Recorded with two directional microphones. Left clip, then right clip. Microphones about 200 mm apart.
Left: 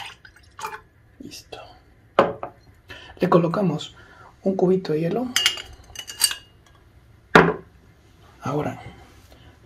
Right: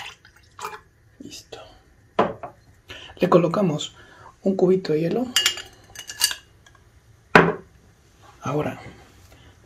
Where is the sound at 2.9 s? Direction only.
10° right (ahead or behind).